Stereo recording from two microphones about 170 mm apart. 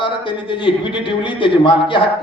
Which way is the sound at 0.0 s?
30° left (ahead or behind).